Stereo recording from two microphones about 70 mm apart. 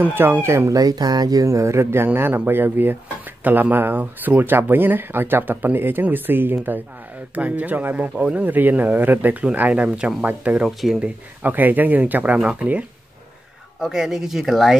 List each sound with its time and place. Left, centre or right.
0.0 s speech: right
0.7 s speech: right; by 12.8 s centre
13.7 s speech: centre